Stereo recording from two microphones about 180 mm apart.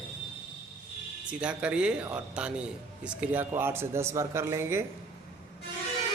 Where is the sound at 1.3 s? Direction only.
5° right (ahead or behind).